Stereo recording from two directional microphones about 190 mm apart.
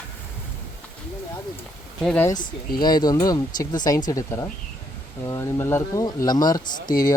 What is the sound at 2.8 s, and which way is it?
Speech, 20° left (ahead or behind).